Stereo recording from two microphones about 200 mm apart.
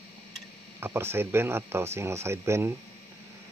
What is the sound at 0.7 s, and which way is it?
Speech, 10° right (ahead or behind).